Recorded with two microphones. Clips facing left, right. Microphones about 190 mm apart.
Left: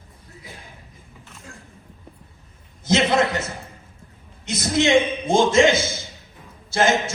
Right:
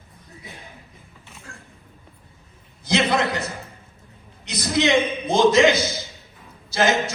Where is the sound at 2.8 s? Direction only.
25° left (ahead or behind).